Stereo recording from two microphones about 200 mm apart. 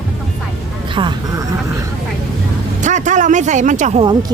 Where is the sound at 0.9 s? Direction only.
25° right (ahead or behind).